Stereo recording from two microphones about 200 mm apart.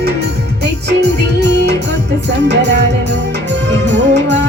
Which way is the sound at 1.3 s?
55° right (ahead or behind).